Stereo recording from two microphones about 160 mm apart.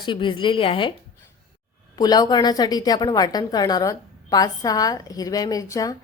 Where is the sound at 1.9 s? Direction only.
25° left (ahead or behind).